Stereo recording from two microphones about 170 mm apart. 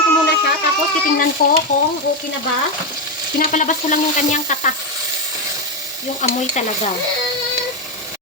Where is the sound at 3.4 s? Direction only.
50° left (ahead or behind).